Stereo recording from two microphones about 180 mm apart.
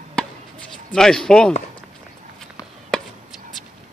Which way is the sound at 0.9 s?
5° left (ahead or behind).